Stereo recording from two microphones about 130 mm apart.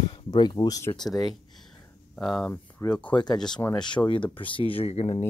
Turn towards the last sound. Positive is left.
turn(degrees=50)  # may be behind; listen again after turning